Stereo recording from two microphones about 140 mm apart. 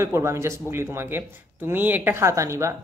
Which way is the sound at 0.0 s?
20° right (ahead or behind).